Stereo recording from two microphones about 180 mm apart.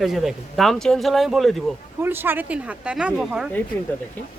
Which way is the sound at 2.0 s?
10° right (ahead or behind).